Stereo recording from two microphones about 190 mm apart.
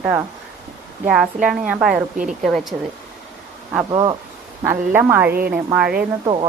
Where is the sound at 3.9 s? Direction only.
25° right (ahead or behind).